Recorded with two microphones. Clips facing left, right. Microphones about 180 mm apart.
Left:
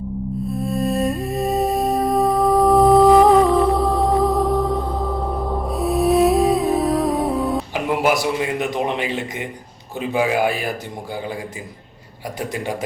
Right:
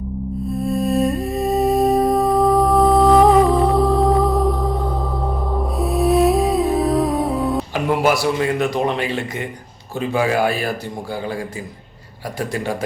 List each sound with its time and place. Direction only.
0.5 s music: centre (ahead or behind)
5.6 s music: centre (ahead or behind)
7.7 s a man's voice: 15° left (ahead or behind)